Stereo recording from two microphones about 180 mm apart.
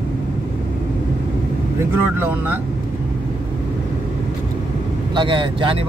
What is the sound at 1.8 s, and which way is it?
Speech, 10° right (ahead or behind).